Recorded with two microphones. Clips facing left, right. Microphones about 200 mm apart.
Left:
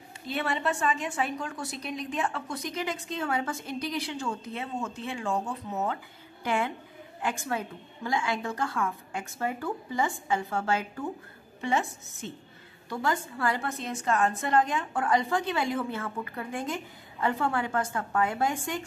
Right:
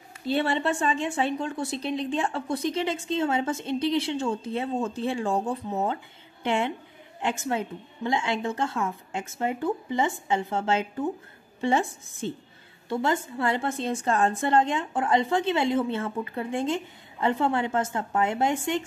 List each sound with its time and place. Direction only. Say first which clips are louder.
0.3 s a woman's voice: right 5 dB; 30° right (ahead or behind)